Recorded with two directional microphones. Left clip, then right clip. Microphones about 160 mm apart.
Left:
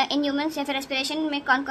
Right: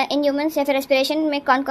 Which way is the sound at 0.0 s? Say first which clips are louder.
Right 5 dB; 20° right (ahead or behind).